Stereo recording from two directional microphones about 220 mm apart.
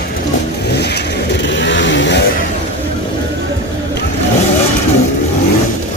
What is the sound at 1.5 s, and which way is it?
Vehicle, 55° left (ahead or behind).